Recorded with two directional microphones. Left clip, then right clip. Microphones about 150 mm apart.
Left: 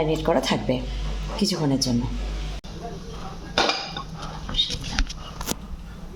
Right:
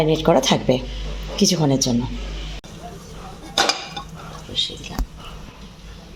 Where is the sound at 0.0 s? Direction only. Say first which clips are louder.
Right 5 dB; 70° right (ahead or behind).